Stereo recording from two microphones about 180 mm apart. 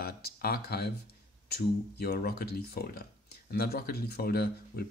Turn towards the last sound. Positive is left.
turn(degrees=60)  # may be behind; listen again after turning